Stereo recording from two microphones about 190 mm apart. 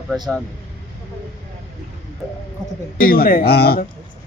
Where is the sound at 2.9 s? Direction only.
50° left (ahead or behind).